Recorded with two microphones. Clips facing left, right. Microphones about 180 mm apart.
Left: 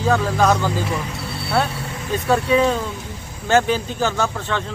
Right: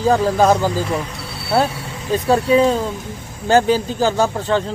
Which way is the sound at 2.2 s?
35° right (ahead or behind).